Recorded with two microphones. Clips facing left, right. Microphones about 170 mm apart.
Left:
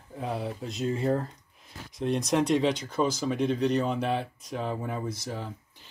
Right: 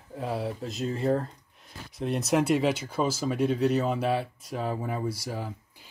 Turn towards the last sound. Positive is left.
turn(degrees=-10)  # may be behind; listen again after turning